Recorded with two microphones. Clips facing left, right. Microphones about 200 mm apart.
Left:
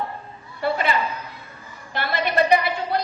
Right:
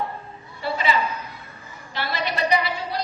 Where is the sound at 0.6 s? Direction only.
55° left (ahead or behind).